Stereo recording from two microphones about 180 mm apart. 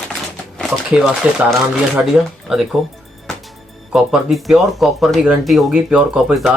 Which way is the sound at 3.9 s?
Centre (ahead or behind).